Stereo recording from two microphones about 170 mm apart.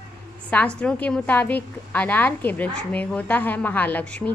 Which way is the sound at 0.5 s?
5° left (ahead or behind).